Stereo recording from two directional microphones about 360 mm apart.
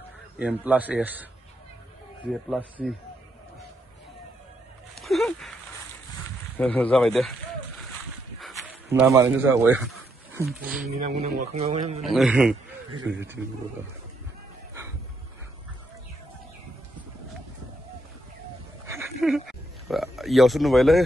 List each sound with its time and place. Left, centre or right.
0.4 s a man's voice: centre
4.9 s a sound: centre
6.6 s a man's voice: centre
8.4 s a sound: centre
8.9 s speech: centre
10.9 s speech: centre
12.0 s a man's voice: centre
13.1 s a man's voice: right
18.9 s oink: centre